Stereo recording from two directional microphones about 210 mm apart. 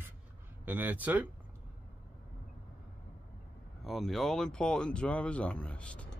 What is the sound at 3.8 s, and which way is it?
Speech, centre (ahead or behind).